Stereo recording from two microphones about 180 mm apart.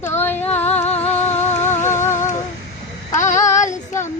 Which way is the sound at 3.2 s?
40° left (ahead or behind).